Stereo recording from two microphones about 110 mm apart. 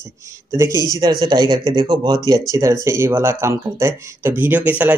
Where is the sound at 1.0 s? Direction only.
40° right (ahead or behind); by 1.9 s 55° right (ahead or behind).